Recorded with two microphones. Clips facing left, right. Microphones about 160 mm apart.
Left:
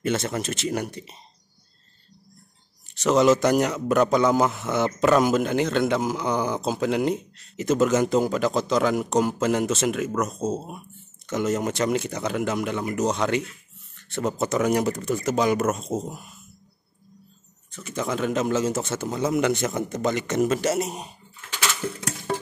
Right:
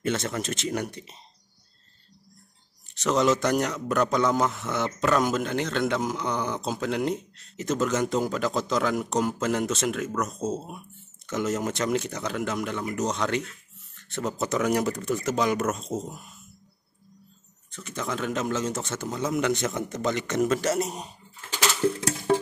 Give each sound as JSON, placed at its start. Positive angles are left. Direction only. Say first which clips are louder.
{"t": 0.0, "sound": "a man's voice", "louder": "left 2 dB", "side_deg": 5}
{"t": 3.0, "sound": "a man's voice", "louder": "left 4 dB", "side_deg": 5}
{"t": 17.6, "sound": "a man's voice", "louder": "left 4 dB", "side_deg": 5}
{"t": 20.4, "sound": "a man's voice", "louder": "left 1 dB", "side_deg": 25}
{"t": 20.7, "sound": "a man's voice", "louder": "left 1 dB", "side_deg": 5}